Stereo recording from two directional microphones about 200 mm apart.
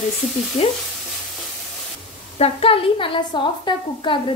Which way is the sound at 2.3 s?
30° left (ahead or behind).